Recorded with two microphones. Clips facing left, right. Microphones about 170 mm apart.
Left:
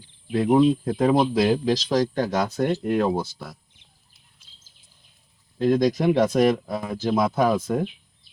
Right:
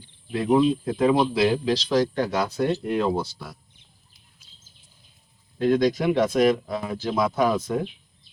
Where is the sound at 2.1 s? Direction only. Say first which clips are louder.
Left 1 dB; 40° left (ahead or behind).